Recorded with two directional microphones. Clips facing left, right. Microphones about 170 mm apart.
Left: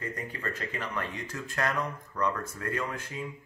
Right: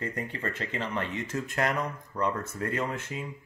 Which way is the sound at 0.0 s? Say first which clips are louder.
Right 3 dB; 25° right (ahead or behind).